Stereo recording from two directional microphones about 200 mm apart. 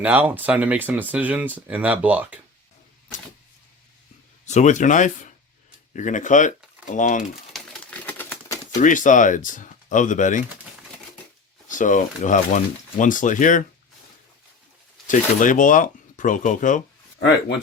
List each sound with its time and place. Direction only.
0.0 s speech: 10° right (ahead or behind)
4.4 s speech: 35° left (ahead or behind)
7.5 s typewriter: 5° left (ahead or behind)
8.8 s speech: 40° left (ahead or behind)
11.7 s speech: 40° left (ahead or behind)
15.0 s speech: 40° left (ahead or behind)